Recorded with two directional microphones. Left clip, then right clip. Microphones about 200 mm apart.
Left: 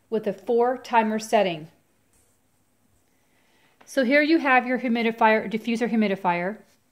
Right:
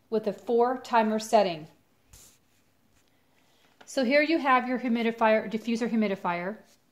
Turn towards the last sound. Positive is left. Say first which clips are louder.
# left 5 dB
turn(degrees=40)  # may be behind; listen again after turning